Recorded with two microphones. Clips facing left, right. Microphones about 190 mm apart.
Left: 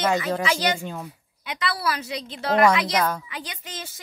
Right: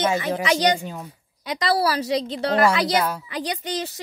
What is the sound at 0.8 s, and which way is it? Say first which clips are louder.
Speech: even; centre (ahead or behind).